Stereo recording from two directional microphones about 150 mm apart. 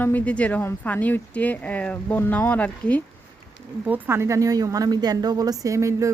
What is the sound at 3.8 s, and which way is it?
A woman's voice, 15° right (ahead or behind).